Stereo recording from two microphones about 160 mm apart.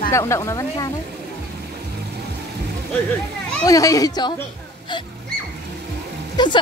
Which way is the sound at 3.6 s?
20° left (ahead or behind).